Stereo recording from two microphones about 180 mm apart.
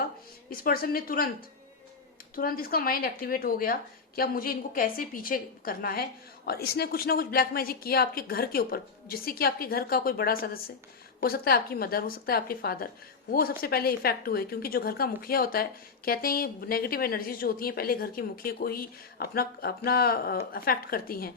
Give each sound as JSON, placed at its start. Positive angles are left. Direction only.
{"t": 0.5, "sound": "a woman's voice", "side_deg": 55}
{"t": 2.3, "sound": "speech", "side_deg": 55}